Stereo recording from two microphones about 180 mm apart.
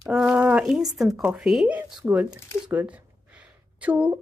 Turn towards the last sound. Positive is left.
turn(degrees=-10)  # may be behind; listen again after turning